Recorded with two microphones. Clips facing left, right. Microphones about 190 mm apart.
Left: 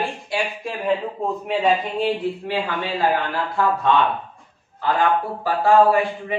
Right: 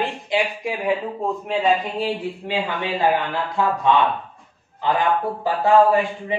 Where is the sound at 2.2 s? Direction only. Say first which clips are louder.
Left 1 dB; 15° right (ahead or behind).